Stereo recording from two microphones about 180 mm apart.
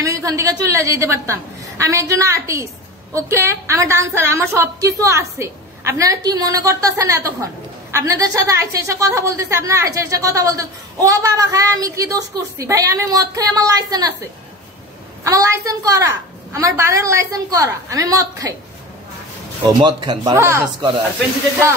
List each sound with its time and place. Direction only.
0.0 s a woman's voice: 20° right (ahead or behind)
15.2 s a woman's voice: 15° right (ahead or behind)
19.8 s speech: 25° right (ahead or behind)
20.3 s a woman's voice: 15° right (ahead or behind)